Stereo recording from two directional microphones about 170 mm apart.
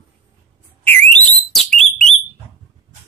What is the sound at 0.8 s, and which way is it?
Alarm, 5° left (ahead or behind).